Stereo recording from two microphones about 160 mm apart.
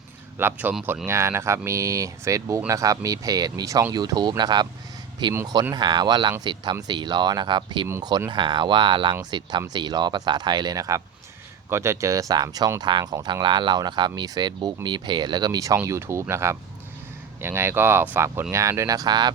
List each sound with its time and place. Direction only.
0.3 s speech: 10° right (ahead or behind)
1.0 s speech: 15° right (ahead or behind)